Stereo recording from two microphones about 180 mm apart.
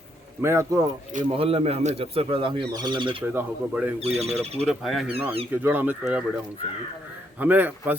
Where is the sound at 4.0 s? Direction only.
35° right (ahead or behind).